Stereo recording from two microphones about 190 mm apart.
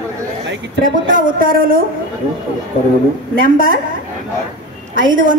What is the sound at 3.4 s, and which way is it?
Speech, 50° right (ahead or behind).